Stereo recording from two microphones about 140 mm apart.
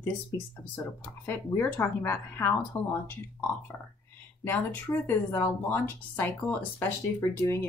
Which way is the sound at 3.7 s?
5° left (ahead or behind).